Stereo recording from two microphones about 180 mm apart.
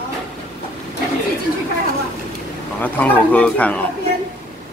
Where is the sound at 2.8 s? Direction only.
10° left (ahead or behind).